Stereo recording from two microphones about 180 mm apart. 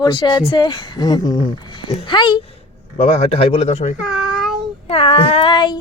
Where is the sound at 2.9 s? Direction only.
35° left (ahead or behind).